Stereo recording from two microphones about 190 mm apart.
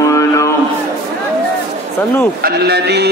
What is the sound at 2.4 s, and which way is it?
Speech, 60° right (ahead or behind).